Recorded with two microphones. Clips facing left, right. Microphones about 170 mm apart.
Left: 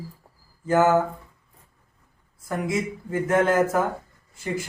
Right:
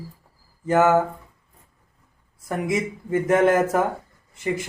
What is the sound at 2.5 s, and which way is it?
Speech, 20° right (ahead or behind).